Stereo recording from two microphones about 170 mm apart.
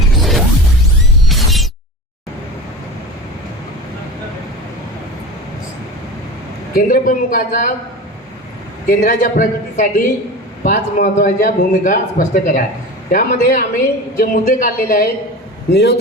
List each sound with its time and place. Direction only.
0.2 s music: centre (ahead or behind)
1.3 s a sound: centre (ahead or behind)
6.7 s a man's voice: 55° left (ahead or behind)
8.9 s a man's voice: 50° left (ahead or behind)
15.7 s a man's voice: 75° left (ahead or behind)